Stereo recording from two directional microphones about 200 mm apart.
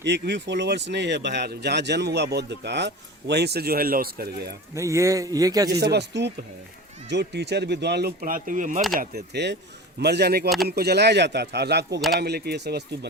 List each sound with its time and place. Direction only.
0.0 s speech: 60° right (ahead or behind)
4.7 s a man's voice: 15° right (ahead or behind)
5.8 s speech: 55° right (ahead or behind); by 8.8 s 40° right (ahead or behind)
9.0 s speech: 55° right (ahead or behind)